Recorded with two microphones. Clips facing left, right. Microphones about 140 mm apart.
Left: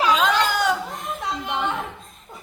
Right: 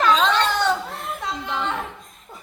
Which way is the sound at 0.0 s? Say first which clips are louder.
Right 1 dB; 10° left (ahead or behind).